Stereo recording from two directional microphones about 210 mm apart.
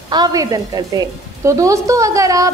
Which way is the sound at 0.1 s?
20° right (ahead or behind).